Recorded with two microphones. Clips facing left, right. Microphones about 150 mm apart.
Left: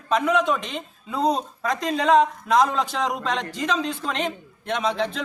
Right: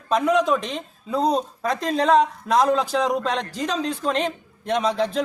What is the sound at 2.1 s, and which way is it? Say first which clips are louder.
A man's voice: left 2 dB; 35° right (ahead or behind).